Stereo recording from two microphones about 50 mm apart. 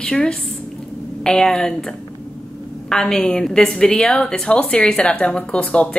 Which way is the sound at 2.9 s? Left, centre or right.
Centre.